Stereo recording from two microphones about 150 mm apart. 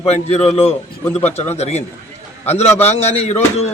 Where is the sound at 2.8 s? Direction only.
45° left (ahead or behind).